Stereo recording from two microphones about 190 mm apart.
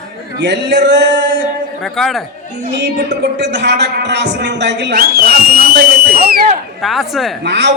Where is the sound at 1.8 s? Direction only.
Centre (ahead or behind).